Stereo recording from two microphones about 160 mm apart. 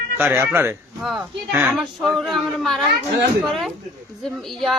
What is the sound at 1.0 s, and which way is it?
A woman's voice, centre (ahead or behind).